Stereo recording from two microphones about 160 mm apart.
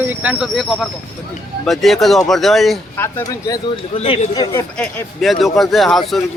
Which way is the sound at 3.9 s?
35° left (ahead or behind).